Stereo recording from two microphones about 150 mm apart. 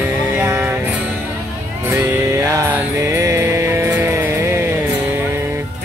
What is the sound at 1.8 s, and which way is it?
Music, 15° right (ahead or behind).